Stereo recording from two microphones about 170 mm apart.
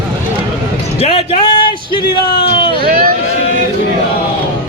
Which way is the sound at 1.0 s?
35° left (ahead or behind).